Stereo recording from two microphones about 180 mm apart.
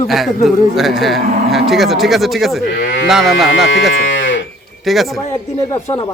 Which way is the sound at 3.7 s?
90° left.